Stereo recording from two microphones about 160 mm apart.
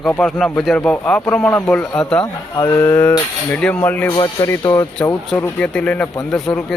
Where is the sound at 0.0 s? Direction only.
Centre (ahead or behind).